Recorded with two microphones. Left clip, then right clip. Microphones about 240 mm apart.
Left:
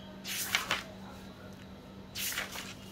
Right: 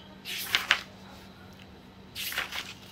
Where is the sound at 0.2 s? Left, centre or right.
Centre.